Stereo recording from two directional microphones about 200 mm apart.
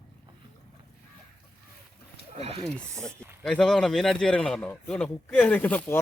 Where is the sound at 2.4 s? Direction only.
30° right (ahead or behind).